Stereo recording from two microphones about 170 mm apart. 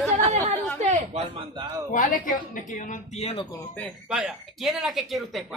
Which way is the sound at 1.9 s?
55° left (ahead or behind).